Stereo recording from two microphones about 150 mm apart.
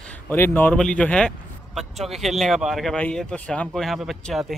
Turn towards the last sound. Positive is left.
turn(degrees=0)  # may be behind; listen again after turning